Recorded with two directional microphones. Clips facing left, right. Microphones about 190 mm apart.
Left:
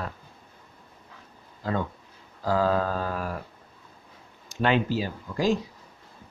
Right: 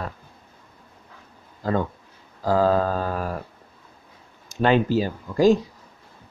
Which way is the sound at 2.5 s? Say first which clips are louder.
Right 4 dB; 40° right (ahead or behind).